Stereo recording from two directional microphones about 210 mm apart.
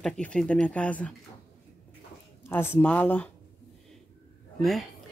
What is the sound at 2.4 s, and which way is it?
Speech, 10° left (ahead or behind).